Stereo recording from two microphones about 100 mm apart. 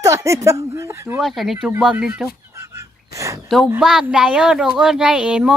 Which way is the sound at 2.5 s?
30° right (ahead or behind).